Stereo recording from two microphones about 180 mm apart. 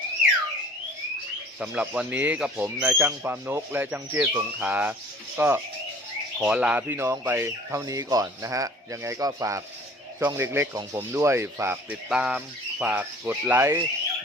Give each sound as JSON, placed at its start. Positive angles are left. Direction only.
{"t": 1.5, "sound": "speech", "side_deg": -5}